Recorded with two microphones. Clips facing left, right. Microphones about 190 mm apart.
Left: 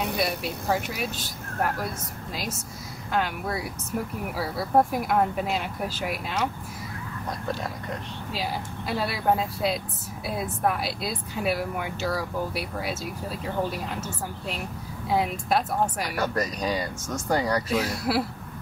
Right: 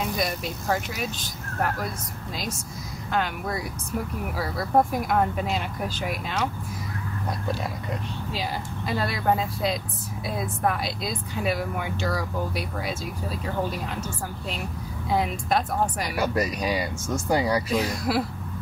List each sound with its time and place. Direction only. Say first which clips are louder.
0.2 s speech: left 1 dB; 5° left (ahead or behind)
3.1 s speech: even; centre (ahead or behind)
8.3 s speech: left 1 dB; 5° left (ahead or behind)
16.2 s speech: right 2 dB; 10° right (ahead or behind)
17.7 s speech: right 1 dB; 5° left (ahead or behind)